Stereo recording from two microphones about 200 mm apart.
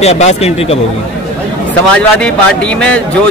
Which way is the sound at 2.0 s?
5° left (ahead or behind).